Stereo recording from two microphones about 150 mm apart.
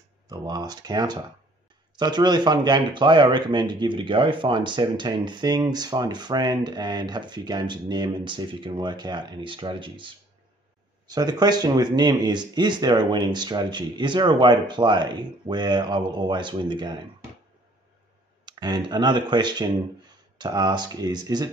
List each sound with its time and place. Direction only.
0.3 s speech: 25° right (ahead or behind)
18.4 s speech: 30° right (ahead or behind)